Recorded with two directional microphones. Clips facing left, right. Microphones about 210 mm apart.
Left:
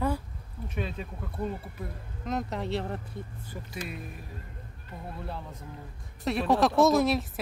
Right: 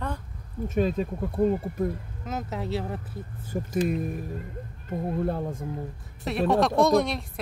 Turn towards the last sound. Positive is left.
turn(degrees=5)  # may be behind; listen again after turning